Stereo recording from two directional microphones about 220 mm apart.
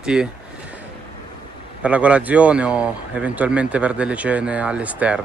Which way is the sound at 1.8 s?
5° right (ahead or behind).